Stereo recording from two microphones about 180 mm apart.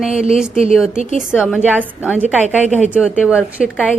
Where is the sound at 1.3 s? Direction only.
5° right (ahead or behind).